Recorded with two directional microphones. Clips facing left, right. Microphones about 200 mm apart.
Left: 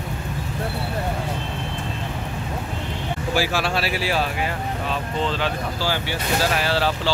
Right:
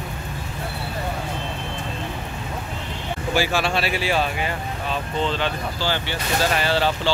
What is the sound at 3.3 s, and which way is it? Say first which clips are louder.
Speech: right 1 dB; 5° left (ahead or behind).